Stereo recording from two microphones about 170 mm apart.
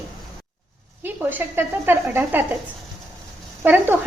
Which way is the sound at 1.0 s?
10° right (ahead or behind).